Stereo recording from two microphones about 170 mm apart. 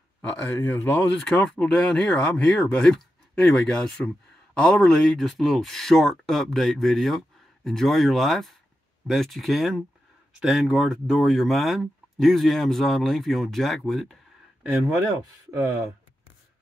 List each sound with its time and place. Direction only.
0.2 s speech: 15° left (ahead or behind); by 15.0 s 5° right (ahead or behind)
15.5 s speech: 20° right (ahead or behind)